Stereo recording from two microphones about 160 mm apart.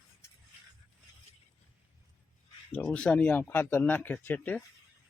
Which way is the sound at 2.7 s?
10° left (ahead or behind).